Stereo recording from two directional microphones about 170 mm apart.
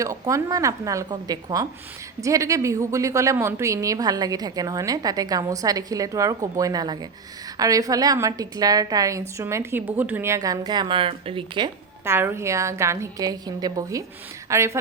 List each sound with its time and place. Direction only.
0.0 s a woman's voice: 20° right (ahead or behind)
12.0 s a woman's voice: 15° right (ahead or behind)